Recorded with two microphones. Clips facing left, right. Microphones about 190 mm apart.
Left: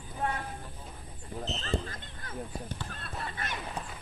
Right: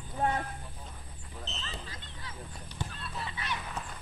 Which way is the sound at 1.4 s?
50° left (ahead or behind).